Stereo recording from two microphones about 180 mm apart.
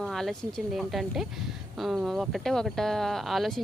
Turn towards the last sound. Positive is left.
turn(degrees=0)  # may be behind; listen again after turning